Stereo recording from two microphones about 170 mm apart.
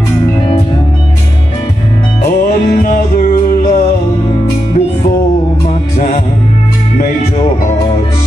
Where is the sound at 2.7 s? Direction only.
55° left (ahead or behind).